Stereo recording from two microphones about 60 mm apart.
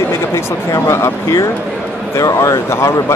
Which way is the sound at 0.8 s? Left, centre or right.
Left.